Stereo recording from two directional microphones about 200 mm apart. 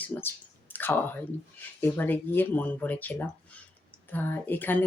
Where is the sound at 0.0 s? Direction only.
10° left (ahead or behind).